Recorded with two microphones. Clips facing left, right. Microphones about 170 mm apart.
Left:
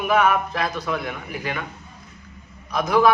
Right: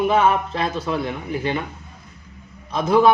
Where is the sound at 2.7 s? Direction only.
25° right (ahead or behind).